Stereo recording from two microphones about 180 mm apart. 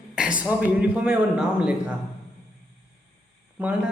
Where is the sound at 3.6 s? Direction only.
10° right (ahead or behind).